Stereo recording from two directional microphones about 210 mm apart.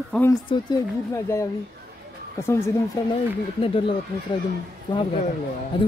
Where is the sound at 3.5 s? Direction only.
25° left (ahead or behind).